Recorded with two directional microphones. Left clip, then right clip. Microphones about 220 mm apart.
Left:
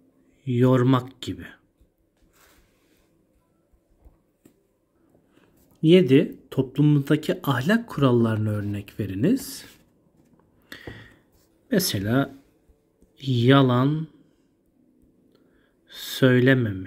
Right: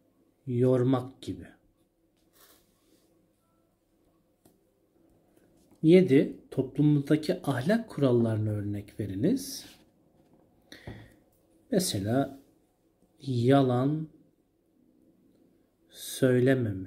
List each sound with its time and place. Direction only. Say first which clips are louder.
0.5 s speech: left 5 dB; 25° left (ahead or behind)
5.8 s speech: left 4 dB; 25° left (ahead or behind)
10.7 s a sound: left 7 dB; 25° left (ahead or behind)
11.7 s speech: left 5 dB; 25° left (ahead or behind)
15.9 s speech: left 6 dB; 25° left (ahead or behind)